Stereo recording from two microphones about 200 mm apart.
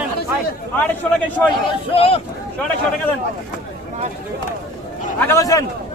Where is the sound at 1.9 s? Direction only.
30° left (ahead or behind).